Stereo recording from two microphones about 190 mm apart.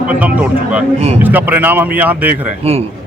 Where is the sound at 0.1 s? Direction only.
10° right (ahead or behind).